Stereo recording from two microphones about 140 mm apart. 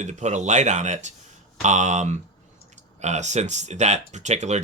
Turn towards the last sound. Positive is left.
turn(degrees=-55)  # may be behind; listen again after turning